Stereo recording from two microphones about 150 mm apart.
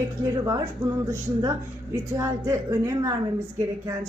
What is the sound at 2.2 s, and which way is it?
Speech, 20° right (ahead or behind).